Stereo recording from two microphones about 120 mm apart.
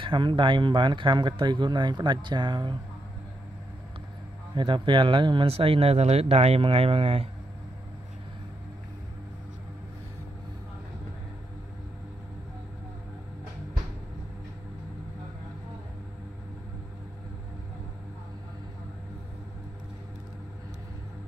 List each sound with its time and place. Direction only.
0.0 s speech: 45° right (ahead or behind)
4.6 s speech: 45° right (ahead or behind)